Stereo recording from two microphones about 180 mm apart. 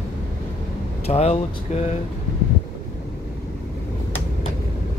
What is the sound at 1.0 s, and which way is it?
Speech, 35° left (ahead or behind).